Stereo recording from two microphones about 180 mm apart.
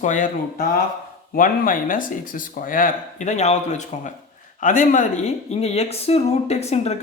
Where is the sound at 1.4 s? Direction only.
50° left (ahead or behind).